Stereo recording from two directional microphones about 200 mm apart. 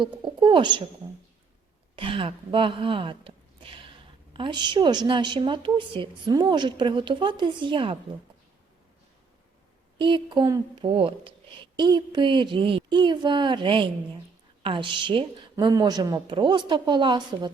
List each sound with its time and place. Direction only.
0.0 s a sound: 25° right (ahead or behind)
2.0 s speech: 25° right (ahead or behind)
10.0 s speech: 25° right (ahead or behind)